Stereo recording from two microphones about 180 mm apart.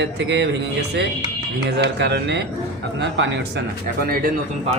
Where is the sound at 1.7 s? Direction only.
70° right (ahead or behind); by 4.3 s 55° right (ahead or behind).